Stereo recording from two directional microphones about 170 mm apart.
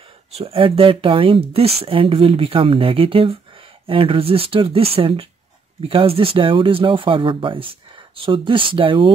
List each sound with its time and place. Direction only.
0.3 s speech: 35° right (ahead or behind)